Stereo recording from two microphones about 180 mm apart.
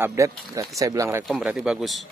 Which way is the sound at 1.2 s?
5° right (ahead or behind).